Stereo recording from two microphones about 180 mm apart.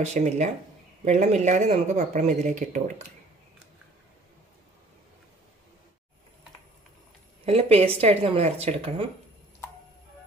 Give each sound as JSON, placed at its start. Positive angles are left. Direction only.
{"t": 0.0, "sound": "speech", "side_deg": -40}
{"t": 7.4, "sound": "speech", "side_deg": -35}